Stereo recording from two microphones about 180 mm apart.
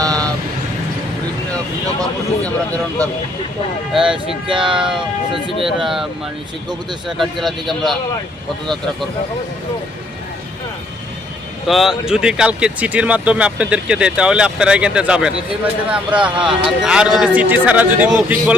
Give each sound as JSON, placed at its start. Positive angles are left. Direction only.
{"t": 0.0, "sound": "vehicle", "side_deg": -20}
{"t": 2.4, "sound": "speech", "side_deg": 5}
{"t": 3.9, "sound": "speech", "side_deg": -5}
{"t": 4.4, "sound": "speech", "side_deg": -30}
{"t": 4.8, "sound": "speech", "side_deg": -5}
{"t": 7.2, "sound": "speech", "side_deg": 0}
{"t": 11.7, "sound": "speech", "side_deg": 0}